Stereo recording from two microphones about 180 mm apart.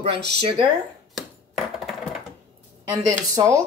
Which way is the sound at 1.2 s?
Centre (ahead or behind).